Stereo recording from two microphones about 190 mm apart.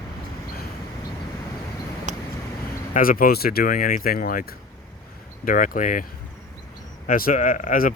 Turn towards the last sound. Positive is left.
turn(degrees=45)  # may be behind; listen again after turning